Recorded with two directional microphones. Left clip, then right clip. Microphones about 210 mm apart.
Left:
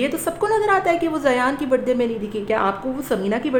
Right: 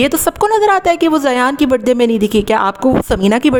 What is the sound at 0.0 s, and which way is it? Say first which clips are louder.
A woman's voice: right 9 dB; 50° right (ahead or behind).